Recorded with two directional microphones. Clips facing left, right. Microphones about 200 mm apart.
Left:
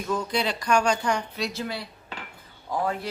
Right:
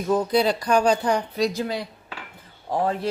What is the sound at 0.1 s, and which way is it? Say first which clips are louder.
Speech: right 7 dB; 35° right (ahead or behind).